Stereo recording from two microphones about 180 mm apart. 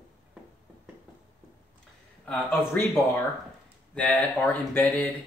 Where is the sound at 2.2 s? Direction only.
10° left (ahead or behind).